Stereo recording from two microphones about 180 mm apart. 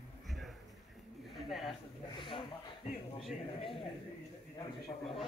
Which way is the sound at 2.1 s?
25° left (ahead or behind).